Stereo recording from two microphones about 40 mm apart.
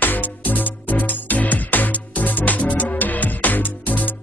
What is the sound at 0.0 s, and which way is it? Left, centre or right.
Music, left.